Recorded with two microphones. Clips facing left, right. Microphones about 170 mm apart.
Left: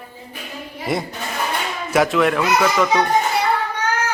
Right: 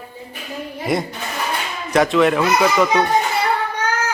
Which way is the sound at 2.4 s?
10° right (ahead or behind).